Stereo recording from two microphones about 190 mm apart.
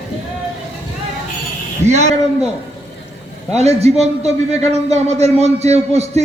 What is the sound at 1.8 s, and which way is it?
Speech, 35° right (ahead or behind).